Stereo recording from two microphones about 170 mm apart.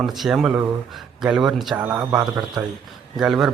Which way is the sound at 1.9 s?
20° right (ahead or behind).